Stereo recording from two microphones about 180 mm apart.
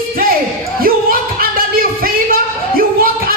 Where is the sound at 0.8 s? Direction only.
55° right (ahead or behind).